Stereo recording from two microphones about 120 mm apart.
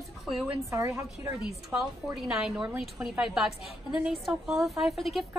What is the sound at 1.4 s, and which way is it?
A woman's voice, centre (ahead or behind).